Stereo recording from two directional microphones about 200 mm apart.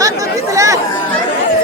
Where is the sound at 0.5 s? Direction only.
15° right (ahead or behind).